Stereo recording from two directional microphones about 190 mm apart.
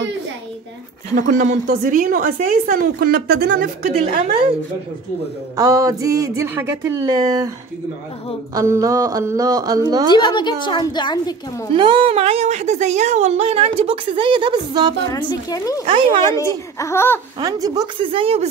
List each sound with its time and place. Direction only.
1.1 s speech: 40° right (ahead or behind)
4.0 s speech: 25° right (ahead or behind)
5.6 s speech: 20° right (ahead or behind)
8.5 s speech: 15° right (ahead or behind)
10.1 s a woman's voice: 25° left (ahead or behind)
11.7 s a woman's voice: 25° right (ahead or behind)
15.0 s a child's voice: 15° left (ahead or behind)
17.4 s speech: 20° right (ahead or behind)